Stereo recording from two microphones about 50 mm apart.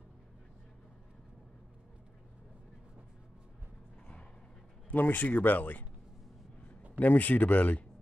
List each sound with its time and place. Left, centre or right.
4.8 s speech: left
7.0 s speech: left